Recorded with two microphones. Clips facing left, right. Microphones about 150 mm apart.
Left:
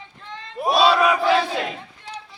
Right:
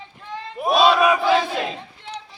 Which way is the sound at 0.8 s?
15° right (ahead or behind).